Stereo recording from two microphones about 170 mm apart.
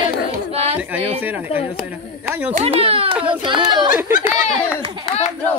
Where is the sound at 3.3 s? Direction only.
30° right (ahead or behind).